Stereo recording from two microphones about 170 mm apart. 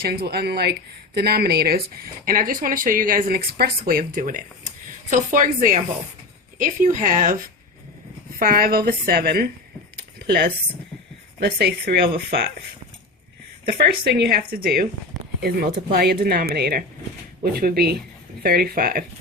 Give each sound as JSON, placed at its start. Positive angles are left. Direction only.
{"t": 0.0, "sound": "speech", "side_deg": -65}
{"t": 2.2, "sound": "speech", "side_deg": -55}
{"t": 8.4, "sound": "speech", "side_deg": -60}
{"t": 10.0, "sound": "a sound", "side_deg": -70}
{"t": 11.3, "sound": "speech", "side_deg": -70}
{"t": 13.7, "sound": "speech", "side_deg": -65}